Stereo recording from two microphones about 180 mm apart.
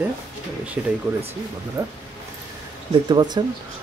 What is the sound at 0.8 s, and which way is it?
A man's voice, 10° right (ahead or behind).